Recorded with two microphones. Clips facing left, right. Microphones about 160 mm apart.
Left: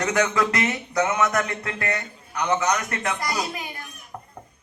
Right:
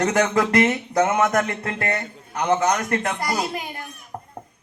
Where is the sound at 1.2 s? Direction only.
45° right (ahead or behind).